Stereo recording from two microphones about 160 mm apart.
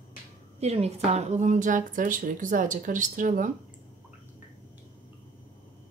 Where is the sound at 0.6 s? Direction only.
40° right (ahead or behind).